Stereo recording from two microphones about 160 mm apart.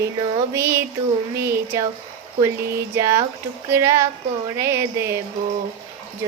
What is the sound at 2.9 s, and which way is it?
A woman's voice, 20° right (ahead or behind).